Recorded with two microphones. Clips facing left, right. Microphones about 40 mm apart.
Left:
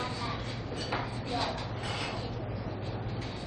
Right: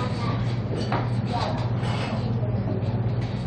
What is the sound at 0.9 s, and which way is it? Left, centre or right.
Vehicle, centre.